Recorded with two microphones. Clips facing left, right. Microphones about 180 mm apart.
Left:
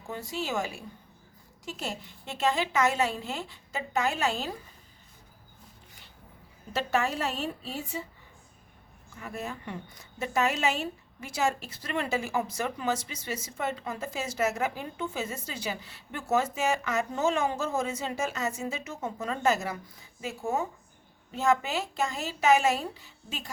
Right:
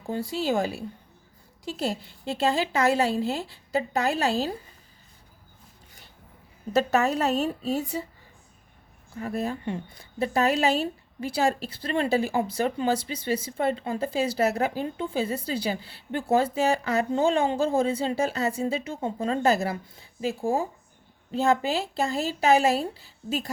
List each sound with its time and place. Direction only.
0.1 s a woman's voice: 35° right (ahead or behind)
6.7 s a woman's voice: 40° right (ahead or behind)
9.1 s a woman's voice: 35° right (ahead or behind)